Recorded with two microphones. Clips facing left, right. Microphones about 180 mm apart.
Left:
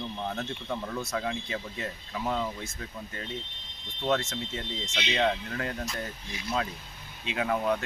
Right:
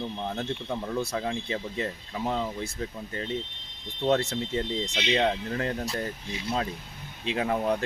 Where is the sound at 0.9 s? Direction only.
30° right (ahead or behind).